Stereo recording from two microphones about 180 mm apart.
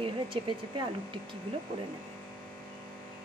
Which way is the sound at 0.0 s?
30° right (ahead or behind).